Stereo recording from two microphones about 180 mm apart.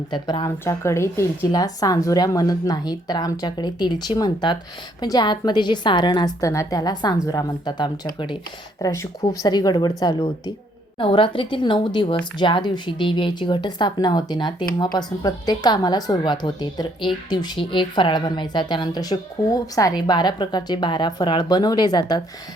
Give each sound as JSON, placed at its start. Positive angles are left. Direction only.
{"t": 0.1, "sound": "speech", "side_deg": 25}